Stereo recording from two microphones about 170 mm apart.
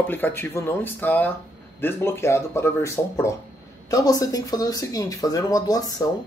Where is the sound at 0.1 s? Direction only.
10° left (ahead or behind).